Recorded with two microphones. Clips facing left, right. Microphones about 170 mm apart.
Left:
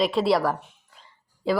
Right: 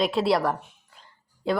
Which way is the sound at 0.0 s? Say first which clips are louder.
Left 1 dB; centre (ahead or behind).